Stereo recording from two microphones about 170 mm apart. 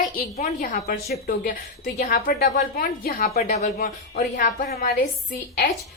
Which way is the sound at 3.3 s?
40° left (ahead or behind).